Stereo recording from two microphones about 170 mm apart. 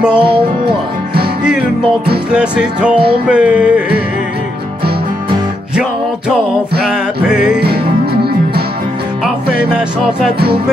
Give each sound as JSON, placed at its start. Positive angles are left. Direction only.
{"t": 2.3, "sound": "music", "side_deg": -5}
{"t": 7.2, "sound": "music", "side_deg": -5}
{"t": 7.6, "sound": "music", "side_deg": -70}